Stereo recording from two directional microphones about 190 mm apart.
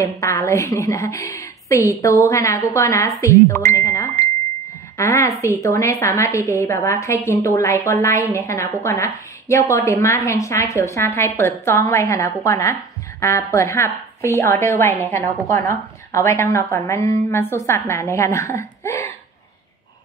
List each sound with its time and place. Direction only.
0.2 s a woman's voice: 15° left (ahead or behind)